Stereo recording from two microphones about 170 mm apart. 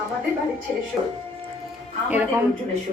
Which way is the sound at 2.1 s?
10° right (ahead or behind).